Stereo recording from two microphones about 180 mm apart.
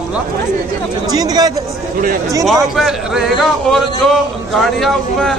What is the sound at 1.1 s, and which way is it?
Speech, 20° right (ahead or behind).